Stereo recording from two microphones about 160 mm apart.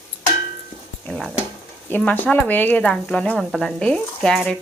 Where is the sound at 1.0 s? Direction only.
5° left (ahead or behind).